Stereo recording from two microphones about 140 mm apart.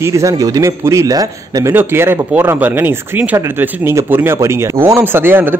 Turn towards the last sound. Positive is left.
turn(degrees=-15)  # may be behind; listen again after turning